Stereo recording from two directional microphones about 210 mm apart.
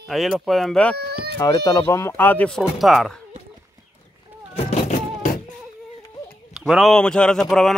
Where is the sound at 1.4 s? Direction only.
15° left (ahead or behind); by 3.2 s centre (ahead or behind).